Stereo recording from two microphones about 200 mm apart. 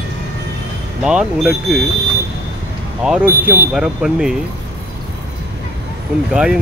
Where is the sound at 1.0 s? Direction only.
5° right (ahead or behind).